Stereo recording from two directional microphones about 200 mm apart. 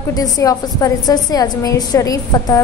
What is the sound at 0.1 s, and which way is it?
A woman's voice, 20° left (ahead or behind).